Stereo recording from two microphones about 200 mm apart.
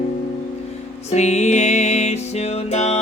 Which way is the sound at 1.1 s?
35° left (ahead or behind).